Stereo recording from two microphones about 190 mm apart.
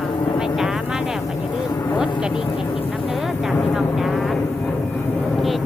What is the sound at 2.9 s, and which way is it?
Vehicle, centre (ahead or behind).